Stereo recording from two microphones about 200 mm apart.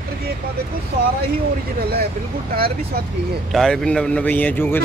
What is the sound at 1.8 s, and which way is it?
Speech, 50° right (ahead or behind).